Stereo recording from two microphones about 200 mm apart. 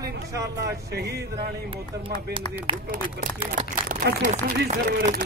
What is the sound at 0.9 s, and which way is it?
Speech, 55° right (ahead or behind).